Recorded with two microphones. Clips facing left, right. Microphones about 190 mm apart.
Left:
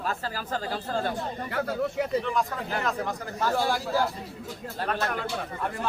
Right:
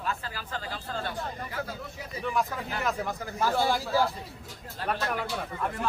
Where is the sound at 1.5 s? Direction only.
65° left (ahead or behind).